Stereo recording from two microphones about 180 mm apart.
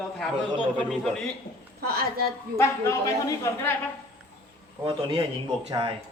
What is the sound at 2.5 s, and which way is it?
A man's voice, 15° left (ahead or behind).